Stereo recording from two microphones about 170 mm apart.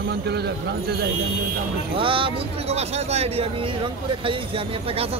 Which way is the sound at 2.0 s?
30° right (ahead or behind).